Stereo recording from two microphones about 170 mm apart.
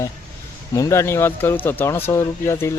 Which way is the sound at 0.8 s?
15° left (ahead or behind).